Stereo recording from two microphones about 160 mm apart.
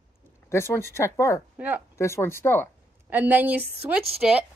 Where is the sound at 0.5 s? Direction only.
15° left (ahead or behind).